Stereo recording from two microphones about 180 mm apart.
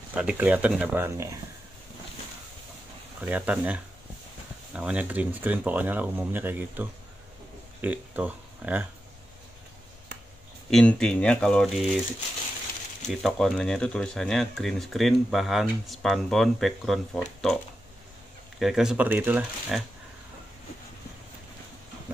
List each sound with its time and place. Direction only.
0.1 s speech: 5° right (ahead or behind)
3.2 s speech: 10° right (ahead or behind)
10.7 s speech: 5° left (ahead or behind)
13.0 s speech: centre (ahead or behind)
18.6 s speech: centre (ahead or behind)